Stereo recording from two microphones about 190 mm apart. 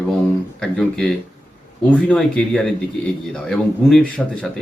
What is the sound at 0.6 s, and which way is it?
A man's voice, centre (ahead or behind).